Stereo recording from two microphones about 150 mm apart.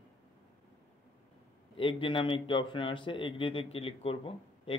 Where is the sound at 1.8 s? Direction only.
35° left (ahead or behind).